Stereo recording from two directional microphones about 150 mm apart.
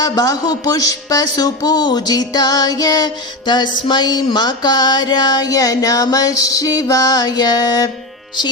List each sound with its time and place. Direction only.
0.0 s speech: 25° left (ahead or behind)